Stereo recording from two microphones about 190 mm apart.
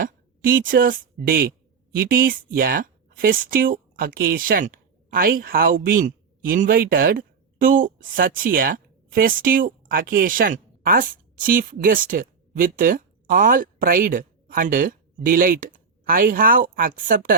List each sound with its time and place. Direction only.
0.0 s speech: 50° right (ahead or behind)